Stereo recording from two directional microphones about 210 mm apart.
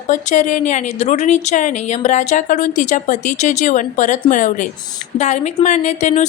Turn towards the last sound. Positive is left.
turn(degrees=35)  # may be behind; listen again after turning